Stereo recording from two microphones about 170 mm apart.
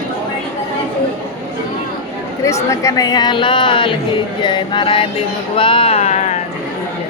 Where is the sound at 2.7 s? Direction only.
20° left (ahead or behind); by 6.3 s 40° left (ahead or behind).